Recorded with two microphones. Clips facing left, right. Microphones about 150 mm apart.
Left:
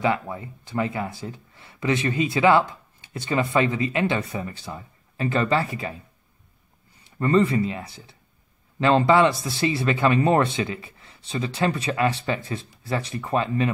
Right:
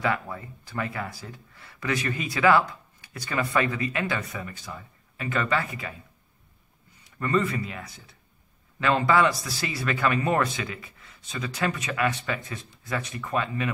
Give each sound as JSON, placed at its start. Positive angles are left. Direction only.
{"t": 0.0, "sound": "speech", "side_deg": 20}
{"t": 7.1, "sound": "speech", "side_deg": 30}